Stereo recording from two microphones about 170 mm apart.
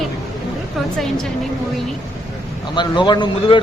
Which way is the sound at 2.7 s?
25° left (ahead or behind).